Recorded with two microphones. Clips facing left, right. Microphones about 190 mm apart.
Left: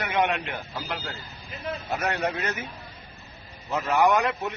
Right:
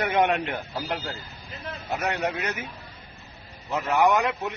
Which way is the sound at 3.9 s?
15° right (ahead or behind).